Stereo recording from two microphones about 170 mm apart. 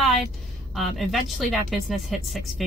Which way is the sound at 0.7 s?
Centre (ahead or behind).